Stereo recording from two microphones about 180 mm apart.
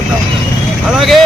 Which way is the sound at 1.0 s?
Centre (ahead or behind).